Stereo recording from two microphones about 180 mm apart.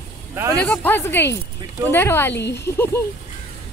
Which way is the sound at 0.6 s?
10° left (ahead or behind).